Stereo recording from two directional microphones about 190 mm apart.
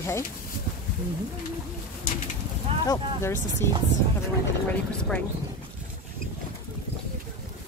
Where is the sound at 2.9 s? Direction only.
15° left (ahead or behind).